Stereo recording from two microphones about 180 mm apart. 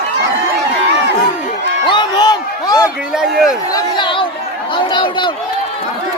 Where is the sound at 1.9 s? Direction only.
25° left (ahead or behind).